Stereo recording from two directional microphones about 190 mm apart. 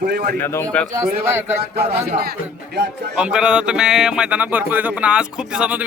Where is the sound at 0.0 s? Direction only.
60° right (ahead or behind).